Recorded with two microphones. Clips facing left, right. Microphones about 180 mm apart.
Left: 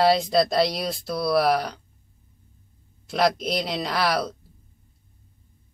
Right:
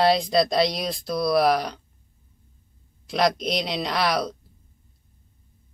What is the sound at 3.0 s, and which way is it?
Speech, centre (ahead or behind).